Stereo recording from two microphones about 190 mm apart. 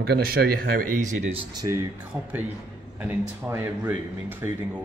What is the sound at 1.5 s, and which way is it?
Speech, 20° right (ahead or behind).